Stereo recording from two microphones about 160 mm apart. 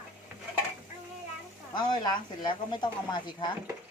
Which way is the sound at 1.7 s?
25° left (ahead or behind).